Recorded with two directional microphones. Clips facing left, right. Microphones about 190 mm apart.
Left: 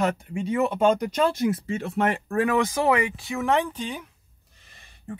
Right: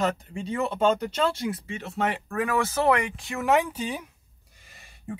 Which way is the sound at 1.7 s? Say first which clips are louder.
Left 4 dB; 50° left (ahead or behind).